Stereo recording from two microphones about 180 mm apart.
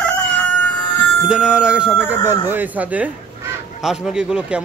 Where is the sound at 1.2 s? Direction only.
5° right (ahead or behind).